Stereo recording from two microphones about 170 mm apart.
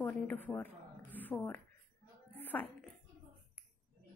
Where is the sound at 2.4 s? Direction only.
10° left (ahead or behind).